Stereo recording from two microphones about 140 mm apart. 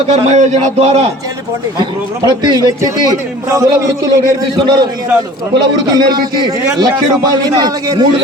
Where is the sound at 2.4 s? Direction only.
30° right (ahead or behind).